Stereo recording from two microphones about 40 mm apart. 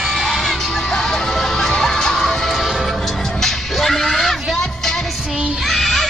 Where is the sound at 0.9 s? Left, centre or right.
Centre.